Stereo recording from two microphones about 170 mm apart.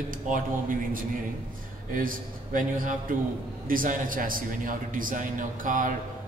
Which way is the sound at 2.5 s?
50° right (ahead or behind).